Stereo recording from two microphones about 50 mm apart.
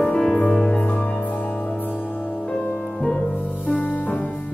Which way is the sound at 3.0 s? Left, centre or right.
Centre.